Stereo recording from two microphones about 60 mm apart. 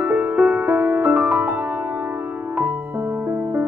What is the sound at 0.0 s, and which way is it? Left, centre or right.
Music, right.